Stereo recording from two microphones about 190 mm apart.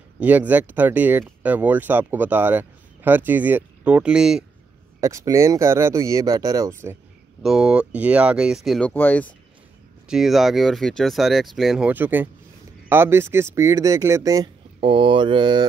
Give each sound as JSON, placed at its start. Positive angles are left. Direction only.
{"t": 0.2, "sound": "speech", "side_deg": -10}
{"t": 5.0, "sound": "speech", "side_deg": -15}
{"t": 10.0, "sound": "speech", "side_deg": 0}